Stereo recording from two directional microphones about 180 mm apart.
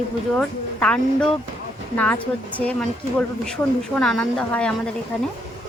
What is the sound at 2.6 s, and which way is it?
A woman's voice, 5° left (ahead or behind).